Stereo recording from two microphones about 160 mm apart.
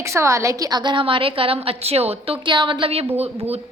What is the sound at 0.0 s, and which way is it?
Speech, 15° right (ahead or behind).